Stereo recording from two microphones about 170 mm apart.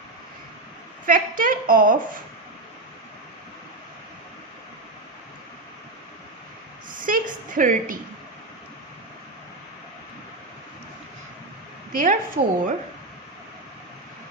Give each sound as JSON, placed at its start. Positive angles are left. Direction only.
{"t": 1.0, "sound": "a woman's voice", "side_deg": -55}
{"t": 7.0, "sound": "a woman's voice", "side_deg": -50}
{"t": 11.9, "sound": "a woman's voice", "side_deg": -55}